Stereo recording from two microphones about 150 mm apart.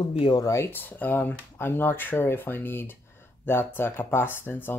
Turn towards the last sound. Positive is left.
turn(degrees=15)  # may be behind; listen again after turning